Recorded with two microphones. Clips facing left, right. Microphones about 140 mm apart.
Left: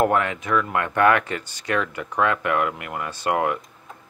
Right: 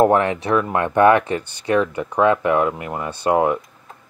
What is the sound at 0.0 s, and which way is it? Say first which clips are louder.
Speech: right 5 dB; 30° right (ahead or behind).